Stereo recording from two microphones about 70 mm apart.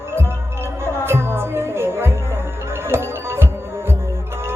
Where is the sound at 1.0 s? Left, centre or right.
Right.